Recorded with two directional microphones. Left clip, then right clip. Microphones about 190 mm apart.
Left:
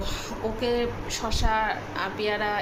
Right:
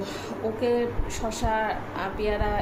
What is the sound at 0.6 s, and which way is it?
A woman's voice, 15° right (ahead or behind).